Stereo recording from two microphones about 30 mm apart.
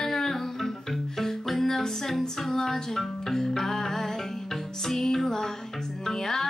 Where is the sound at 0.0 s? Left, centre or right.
Centre.